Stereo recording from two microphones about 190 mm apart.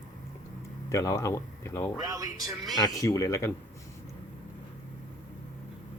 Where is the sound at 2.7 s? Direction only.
20° left (ahead or behind).